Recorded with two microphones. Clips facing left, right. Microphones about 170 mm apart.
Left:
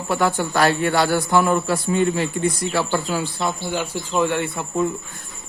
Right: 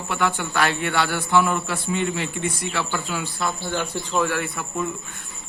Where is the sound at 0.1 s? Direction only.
40° left (ahead or behind).